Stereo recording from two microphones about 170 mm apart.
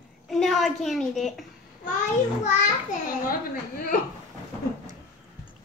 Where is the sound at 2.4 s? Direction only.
45° left (ahead or behind).